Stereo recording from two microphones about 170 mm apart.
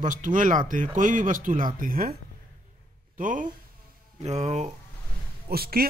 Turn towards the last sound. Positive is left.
turn(degrees=-65)  # may be behind; listen again after turning